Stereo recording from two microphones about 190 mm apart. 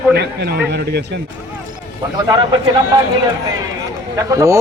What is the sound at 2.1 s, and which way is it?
Speech, 20° right (ahead or behind).